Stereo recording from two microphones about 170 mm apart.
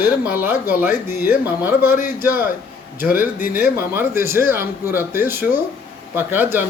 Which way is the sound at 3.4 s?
55° left (ahead or behind).